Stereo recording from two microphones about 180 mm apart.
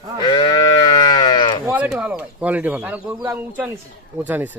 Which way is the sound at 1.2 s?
25° left (ahead or behind).